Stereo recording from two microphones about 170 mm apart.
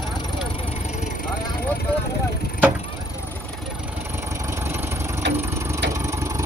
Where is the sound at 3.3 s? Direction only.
Centre (ahead or behind); by 6.4 s 15° right (ahead or behind).